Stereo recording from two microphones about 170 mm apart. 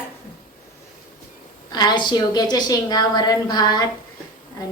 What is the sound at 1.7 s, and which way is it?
A woman's voice, 25° left (ahead or behind).